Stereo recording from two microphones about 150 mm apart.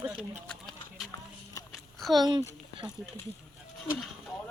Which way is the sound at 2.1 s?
30° right (ahead or behind).